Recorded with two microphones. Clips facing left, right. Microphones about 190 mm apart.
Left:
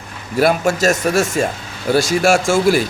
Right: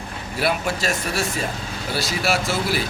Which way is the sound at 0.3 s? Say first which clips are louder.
Left 8 dB; 45° left (ahead or behind).